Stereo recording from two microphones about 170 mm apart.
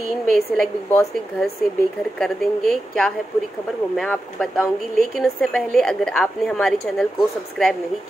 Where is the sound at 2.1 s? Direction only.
5° left (ahead or behind).